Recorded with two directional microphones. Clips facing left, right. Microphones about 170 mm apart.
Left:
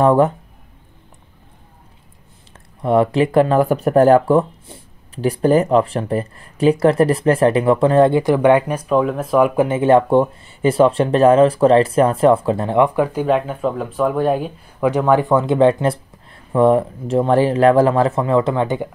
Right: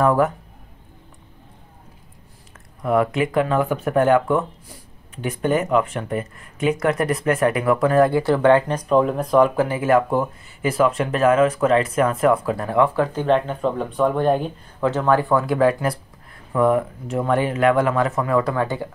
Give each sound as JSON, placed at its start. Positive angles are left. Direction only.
{"t": 0.0, "sound": "speech", "side_deg": 25}
{"t": 2.8, "sound": "speech", "side_deg": 30}
{"t": 9.6, "sound": "speech", "side_deg": 25}